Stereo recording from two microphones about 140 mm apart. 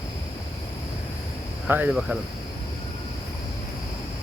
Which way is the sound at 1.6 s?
10° right (ahead or behind).